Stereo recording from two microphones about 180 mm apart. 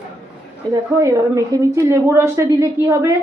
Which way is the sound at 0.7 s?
15° right (ahead or behind).